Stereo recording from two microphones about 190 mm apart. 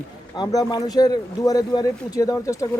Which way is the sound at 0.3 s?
20° left (ahead or behind).